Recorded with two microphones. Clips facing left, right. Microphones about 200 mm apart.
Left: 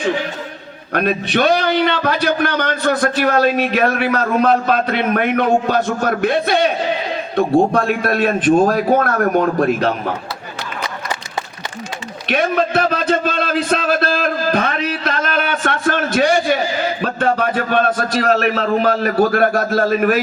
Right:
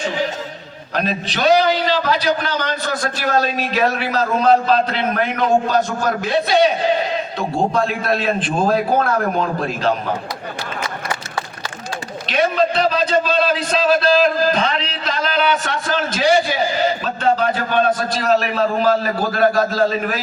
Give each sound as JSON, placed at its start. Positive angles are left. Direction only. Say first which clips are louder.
{"t": 0.9, "sound": "a man's voice", "louder": "left 5 dB", "side_deg": 55}
{"t": 12.3, "sound": "a man's voice", "louder": "left 1 dB", "side_deg": 55}